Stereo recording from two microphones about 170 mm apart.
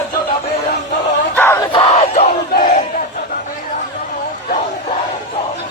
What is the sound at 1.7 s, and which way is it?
Crowd, 30° left (ahead or behind).